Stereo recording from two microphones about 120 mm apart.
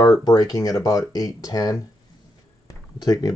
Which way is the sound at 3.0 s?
35° left (ahead or behind).